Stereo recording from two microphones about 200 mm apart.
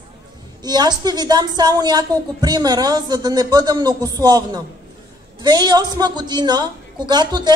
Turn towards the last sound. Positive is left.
turn(degrees=-20)  # may be behind; listen again after turning